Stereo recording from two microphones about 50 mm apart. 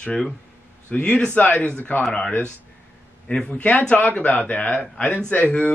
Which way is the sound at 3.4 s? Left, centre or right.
Left.